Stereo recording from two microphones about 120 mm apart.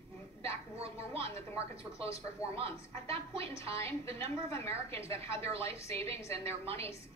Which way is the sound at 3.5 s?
25° left (ahead or behind).